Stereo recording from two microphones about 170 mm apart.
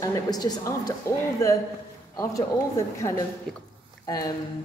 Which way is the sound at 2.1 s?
20° left (ahead or behind).